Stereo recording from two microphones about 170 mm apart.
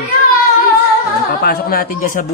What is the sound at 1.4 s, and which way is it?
Speech, 60° left (ahead or behind).